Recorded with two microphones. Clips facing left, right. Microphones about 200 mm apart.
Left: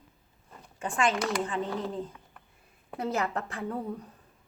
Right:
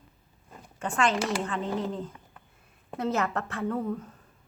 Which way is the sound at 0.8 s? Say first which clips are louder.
Right 1 dB; 15° left (ahead or behind).